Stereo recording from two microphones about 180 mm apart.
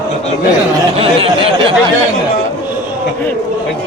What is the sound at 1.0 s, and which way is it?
Speech, 30° right (ahead or behind).